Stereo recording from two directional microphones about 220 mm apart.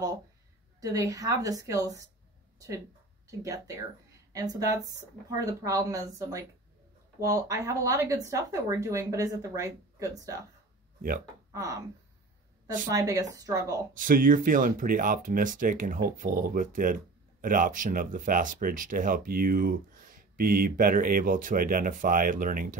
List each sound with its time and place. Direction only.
0.7 s speech: 15° right (ahead or behind)
3.3 s speech: 15° right (ahead or behind)
11.0 s speech: 40° right (ahead or behind)
11.5 s speech: 15° right (ahead or behind)
12.9 s speech: 15° right (ahead or behind)
13.9 s speech: 40° right (ahead or behind)